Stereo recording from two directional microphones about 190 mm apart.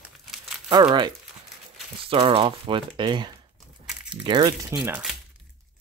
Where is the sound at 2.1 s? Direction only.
30° right (ahead or behind).